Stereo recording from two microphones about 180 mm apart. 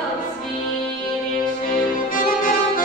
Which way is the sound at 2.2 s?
50° left (ahead or behind).